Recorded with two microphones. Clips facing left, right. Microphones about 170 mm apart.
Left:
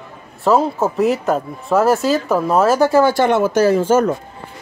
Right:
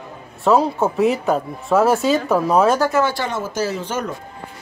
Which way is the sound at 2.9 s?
45° left (ahead or behind).